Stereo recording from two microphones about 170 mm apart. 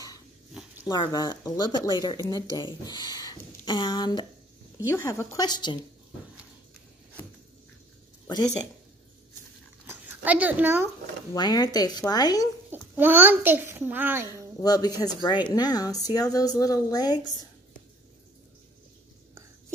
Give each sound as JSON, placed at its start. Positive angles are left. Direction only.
{"t": 0.5, "sound": "a sound", "side_deg": -5}
{"t": 0.8, "sound": "speech", "side_deg": 25}
{"t": 9.8, "sound": "a sound", "side_deg": -10}
{"t": 11.3, "sound": "speech", "side_deg": 25}
{"t": 12.7, "sound": "a child's voice", "side_deg": -10}
{"t": 14.6, "sound": "speech", "side_deg": 20}